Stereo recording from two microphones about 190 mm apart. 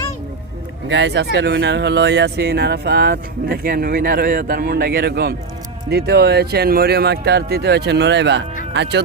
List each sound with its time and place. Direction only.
0.9 s speech: 70° right (ahead or behind)